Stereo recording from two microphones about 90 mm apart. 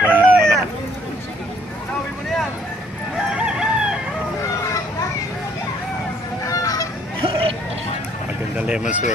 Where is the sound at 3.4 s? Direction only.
10° right (ahead or behind).